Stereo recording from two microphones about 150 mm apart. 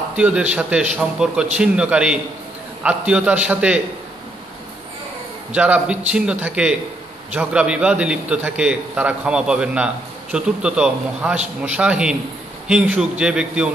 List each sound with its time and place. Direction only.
0.1 s a man's voice: 10° right (ahead or behind)
5.5 s a man's voice: 10° right (ahead or behind)